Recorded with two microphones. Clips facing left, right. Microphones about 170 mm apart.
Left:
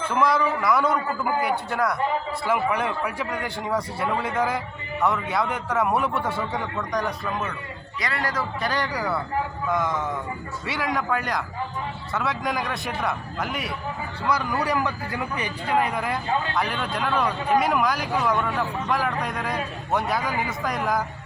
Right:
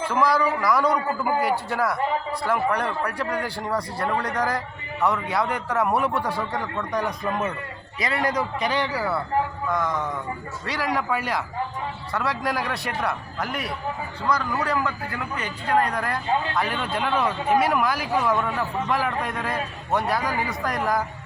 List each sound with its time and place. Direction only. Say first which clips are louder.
0.1 s a man's voice: even; centre (ahead or behind)
7.0 s a man's voice: right 2 dB; 20° right (ahead or behind)
10.7 s a man's voice: even; centre (ahead or behind)
14.3 s a man's voice: even; 10° left (ahead or behind)